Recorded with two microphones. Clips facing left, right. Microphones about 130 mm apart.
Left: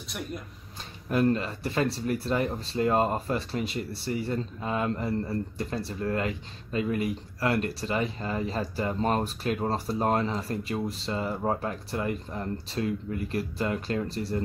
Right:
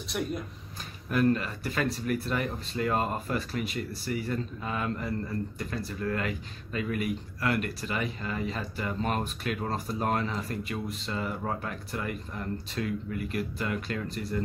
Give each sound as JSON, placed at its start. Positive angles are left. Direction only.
{"t": 1.1, "sound": "speech", "side_deg": 25}